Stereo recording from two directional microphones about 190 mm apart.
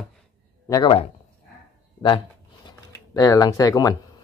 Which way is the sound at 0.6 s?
20° left (ahead or behind).